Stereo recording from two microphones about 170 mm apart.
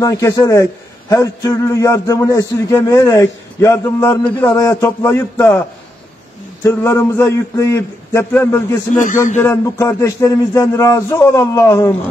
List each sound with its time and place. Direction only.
0.0 s a man's voice: 20° left (ahead or behind)
6.6 s speech: 15° left (ahead or behind)
8.9 s speech: 50° left (ahead or behind)
9.4 s speech: 15° left (ahead or behind)